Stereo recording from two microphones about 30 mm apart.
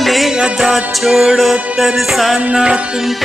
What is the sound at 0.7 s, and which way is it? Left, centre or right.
Music, centre.